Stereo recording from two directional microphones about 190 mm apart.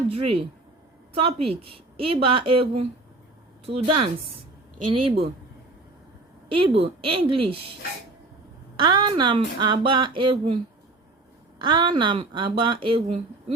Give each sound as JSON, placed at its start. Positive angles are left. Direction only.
{"t": 0.1, "sound": "a woman's voice", "side_deg": -30}
{"t": 6.5, "sound": "speech", "side_deg": -30}
{"t": 8.7, "sound": "speech", "side_deg": -25}
{"t": 11.6, "sound": "speech", "side_deg": -25}